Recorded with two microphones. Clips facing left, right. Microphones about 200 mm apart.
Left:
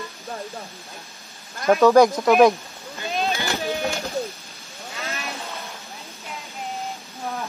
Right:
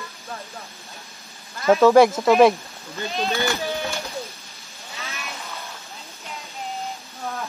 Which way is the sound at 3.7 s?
45° left (ahead or behind).